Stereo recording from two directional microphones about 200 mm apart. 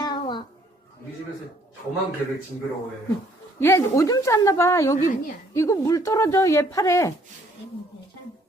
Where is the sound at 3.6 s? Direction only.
15° left (ahead or behind).